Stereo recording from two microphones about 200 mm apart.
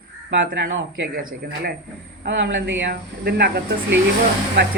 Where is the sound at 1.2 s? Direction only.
45° right (ahead or behind).